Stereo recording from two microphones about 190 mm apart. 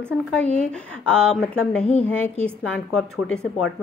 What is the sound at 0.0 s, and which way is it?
A woman's voice, 5° left (ahead or behind).